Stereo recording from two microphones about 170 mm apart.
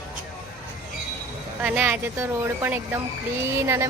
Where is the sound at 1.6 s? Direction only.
10° right (ahead or behind).